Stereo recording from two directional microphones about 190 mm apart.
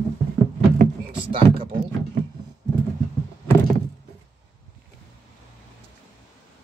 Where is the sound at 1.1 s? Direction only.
25° right (ahead or behind).